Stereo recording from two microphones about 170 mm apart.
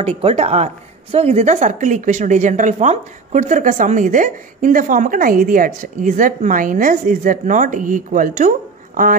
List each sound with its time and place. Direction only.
0.2 s speech: 35° right (ahead or behind); by 9.1 s 50° right (ahead or behind)